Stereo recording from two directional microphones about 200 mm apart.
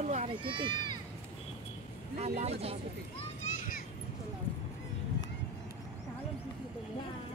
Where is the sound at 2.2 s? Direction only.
30° right (ahead or behind).